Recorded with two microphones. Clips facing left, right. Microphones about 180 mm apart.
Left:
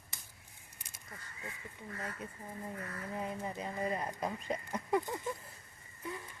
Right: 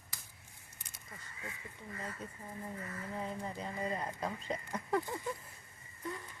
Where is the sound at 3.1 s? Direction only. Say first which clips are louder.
Left 2 dB; 15° left (ahead or behind).